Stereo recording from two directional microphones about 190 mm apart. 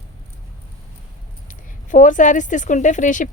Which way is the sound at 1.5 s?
45° left (ahead or behind).